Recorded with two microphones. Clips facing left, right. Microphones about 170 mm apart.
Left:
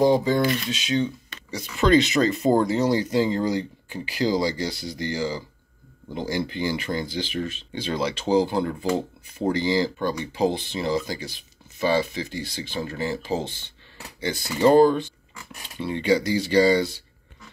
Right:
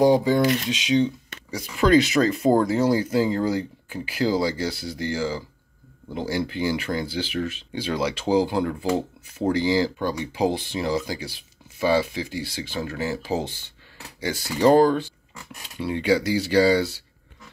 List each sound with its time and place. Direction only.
0.0 s speech: 10° right (ahead or behind)
14.6 s speech: 10° left (ahead or behind)
15.8 s speech: 10° right (ahead or behind)